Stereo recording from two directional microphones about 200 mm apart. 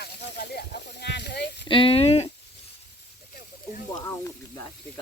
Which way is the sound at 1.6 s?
25° left (ahead or behind).